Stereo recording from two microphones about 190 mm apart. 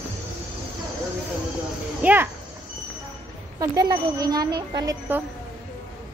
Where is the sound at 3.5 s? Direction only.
20° right (ahead or behind).